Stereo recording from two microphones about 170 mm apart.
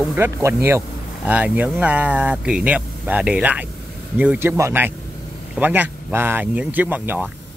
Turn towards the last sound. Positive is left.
turn(degrees=-10)  # may be behind; listen again after turning